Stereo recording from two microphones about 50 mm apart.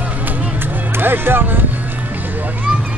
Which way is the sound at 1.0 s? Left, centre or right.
Right.